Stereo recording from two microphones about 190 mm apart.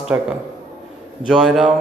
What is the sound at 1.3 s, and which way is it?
Speech, centre (ahead or behind).